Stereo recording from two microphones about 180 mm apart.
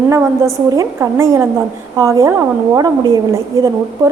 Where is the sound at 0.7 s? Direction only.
15° right (ahead or behind).